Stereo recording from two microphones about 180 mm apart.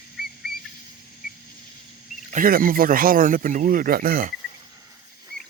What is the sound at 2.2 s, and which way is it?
Speech, 50° right (ahead or behind).